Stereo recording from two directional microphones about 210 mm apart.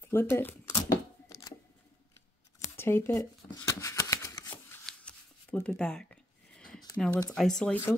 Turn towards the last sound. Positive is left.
turn(degrees=5)  # may be behind; listen again after turning